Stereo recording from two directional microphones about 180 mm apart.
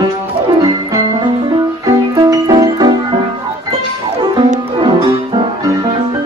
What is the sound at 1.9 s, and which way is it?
Music, 20° right (ahead or behind).